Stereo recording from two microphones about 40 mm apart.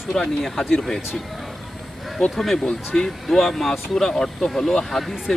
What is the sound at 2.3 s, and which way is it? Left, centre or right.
Speech, centre.